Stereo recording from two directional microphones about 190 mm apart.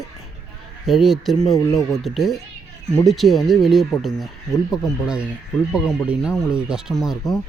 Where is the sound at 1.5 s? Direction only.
15° left (ahead or behind).